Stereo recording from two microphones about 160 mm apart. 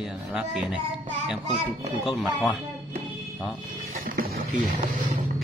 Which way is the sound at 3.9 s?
55° right (ahead or behind).